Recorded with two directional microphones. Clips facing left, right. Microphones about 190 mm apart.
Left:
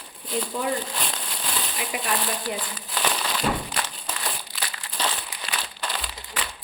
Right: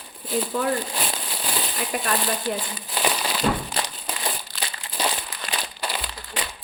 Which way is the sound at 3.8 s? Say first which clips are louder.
Right 2 dB; 25° right (ahead or behind).